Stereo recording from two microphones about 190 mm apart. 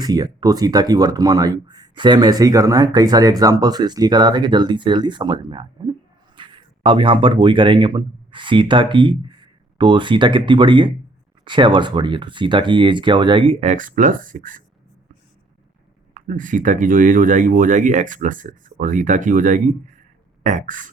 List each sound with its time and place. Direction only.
0.0 s speech: 20° right (ahead or behind); by 14.6 s 45° right (ahead or behind)
16.1 s speech: 45° right (ahead or behind)